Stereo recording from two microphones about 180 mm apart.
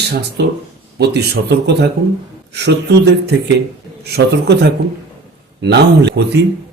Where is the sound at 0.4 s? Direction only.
65° right (ahead or behind).